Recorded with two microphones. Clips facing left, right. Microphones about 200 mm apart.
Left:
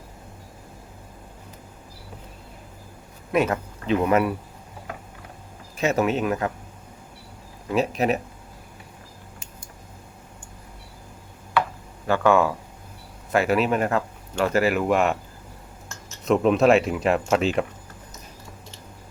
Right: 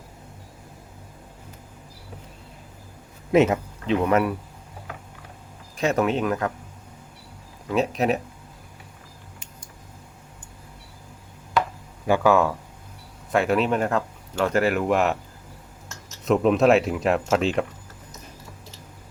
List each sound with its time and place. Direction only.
3.3 s speech: 20° right (ahead or behind)
3.8 s speech: 5° left (ahead or behind)
5.7 s speech: 5° left (ahead or behind)
7.7 s speech: centre (ahead or behind)
12.0 s speech: 15° right (ahead or behind)
12.3 s speech: centre (ahead or behind)
15.9 s cutlery: centre (ahead or behind)